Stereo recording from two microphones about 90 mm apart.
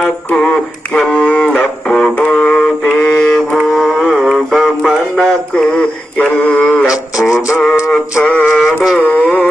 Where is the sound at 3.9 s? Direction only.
5° left (ahead or behind).